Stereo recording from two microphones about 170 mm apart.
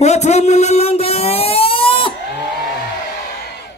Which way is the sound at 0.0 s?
40° left (ahead or behind).